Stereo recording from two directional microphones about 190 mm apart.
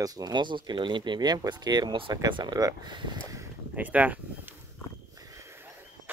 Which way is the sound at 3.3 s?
10° right (ahead or behind).